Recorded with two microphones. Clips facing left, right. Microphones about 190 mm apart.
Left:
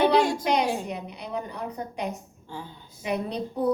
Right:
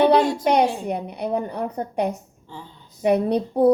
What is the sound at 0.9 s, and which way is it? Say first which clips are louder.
A woman's voice: right 9 dB; 55° right (ahead or behind).